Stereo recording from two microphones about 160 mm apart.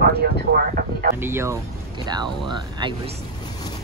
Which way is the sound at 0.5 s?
65° right (ahead or behind).